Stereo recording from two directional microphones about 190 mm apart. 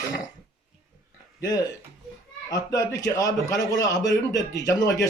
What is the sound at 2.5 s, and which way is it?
A man's voice, 20° left (ahead or behind).